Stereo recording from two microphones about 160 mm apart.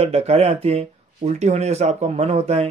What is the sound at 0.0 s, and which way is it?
Speech, 40° right (ahead or behind).